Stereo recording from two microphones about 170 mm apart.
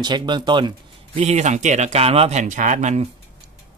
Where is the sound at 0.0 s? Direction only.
25° right (ahead or behind).